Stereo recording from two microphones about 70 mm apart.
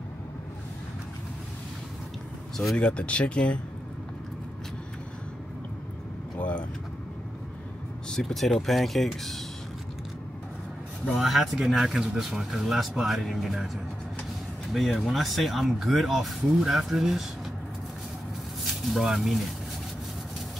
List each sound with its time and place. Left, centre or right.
2.5 s speech: centre
2.9 s speech: centre
6.3 s vehicle: centre
8.1 s speech: centre
11.1 s speech: centre
14.7 s speech: centre
18.6 s speech: centre